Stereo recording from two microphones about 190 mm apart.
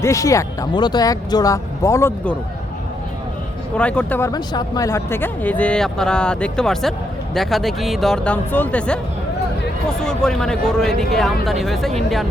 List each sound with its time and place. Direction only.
0.0 s speech: 15° left (ahead or behind)
3.8 s speech: 5° left (ahead or behind)
4.3 s speech: 20° left (ahead or behind)
10.0 s speech: 5° left (ahead or behind)